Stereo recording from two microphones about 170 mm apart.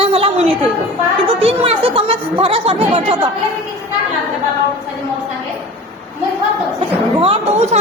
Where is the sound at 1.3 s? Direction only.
35° right (ahead or behind).